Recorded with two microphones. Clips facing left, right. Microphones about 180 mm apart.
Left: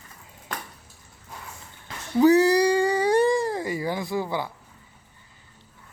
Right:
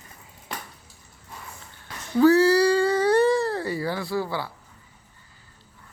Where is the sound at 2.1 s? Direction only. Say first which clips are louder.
Even; 15° left (ahead or behind).